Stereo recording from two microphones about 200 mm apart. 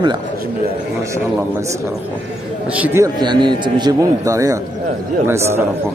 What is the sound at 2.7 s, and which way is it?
A man's voice, 10° right (ahead or behind).